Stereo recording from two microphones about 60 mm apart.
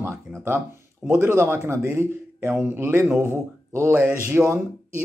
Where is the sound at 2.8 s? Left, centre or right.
Right.